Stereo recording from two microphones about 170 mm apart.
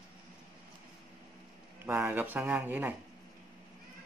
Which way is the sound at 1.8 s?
10° right (ahead or behind).